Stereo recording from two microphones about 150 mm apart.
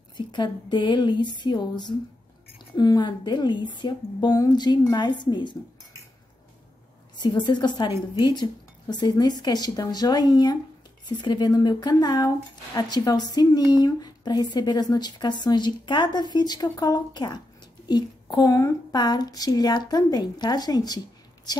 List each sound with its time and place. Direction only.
0.3 s a woman's voice: 30° left (ahead or behind)
7.2 s a woman's voice: 30° left (ahead or behind)